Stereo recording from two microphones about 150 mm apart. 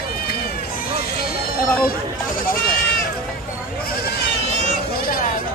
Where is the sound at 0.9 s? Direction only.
90° left.